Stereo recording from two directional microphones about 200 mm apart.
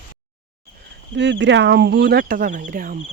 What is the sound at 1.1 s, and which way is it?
Speech, 60° right (ahead or behind).